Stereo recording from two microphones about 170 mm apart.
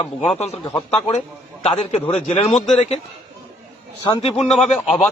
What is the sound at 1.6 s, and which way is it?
Speech, 35° left (ahead or behind).